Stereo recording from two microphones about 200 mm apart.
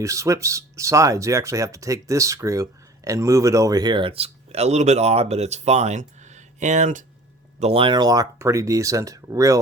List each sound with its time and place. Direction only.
0.0 s speech: 15° right (ahead or behind); by 7.0 s 40° right (ahead or behind)
7.6 s speech: 30° right (ahead or behind)